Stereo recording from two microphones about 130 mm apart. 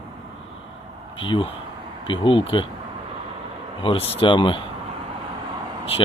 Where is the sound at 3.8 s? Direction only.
45° left (ahead or behind).